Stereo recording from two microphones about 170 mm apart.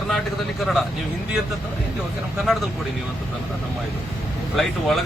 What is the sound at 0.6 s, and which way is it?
Speech, centre (ahead or behind).